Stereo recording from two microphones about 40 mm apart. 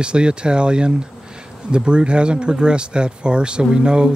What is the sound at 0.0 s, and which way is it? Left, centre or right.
Speech, right.